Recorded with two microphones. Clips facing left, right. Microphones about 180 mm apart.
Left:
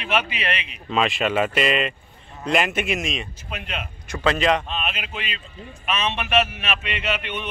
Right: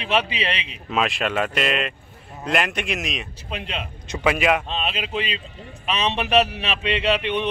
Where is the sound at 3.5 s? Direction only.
30° right (ahead or behind).